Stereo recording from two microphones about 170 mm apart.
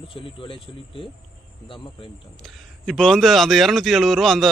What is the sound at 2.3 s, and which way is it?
A man's voice, centre (ahead or behind).